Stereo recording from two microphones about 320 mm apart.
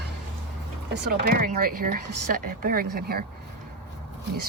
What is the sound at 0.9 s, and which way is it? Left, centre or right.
Speech, right.